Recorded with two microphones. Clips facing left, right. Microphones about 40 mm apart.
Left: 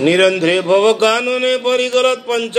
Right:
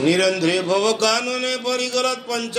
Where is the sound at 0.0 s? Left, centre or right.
Left.